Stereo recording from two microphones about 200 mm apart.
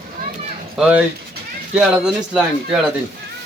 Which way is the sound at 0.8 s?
5° right (ahead or behind).